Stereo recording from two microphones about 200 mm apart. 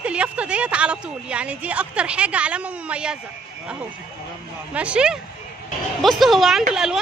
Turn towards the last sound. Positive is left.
turn(degrees=-5)  # may be behind; listen again after turning